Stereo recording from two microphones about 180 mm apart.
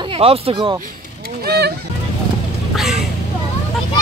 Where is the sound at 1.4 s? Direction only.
65° right (ahead or behind).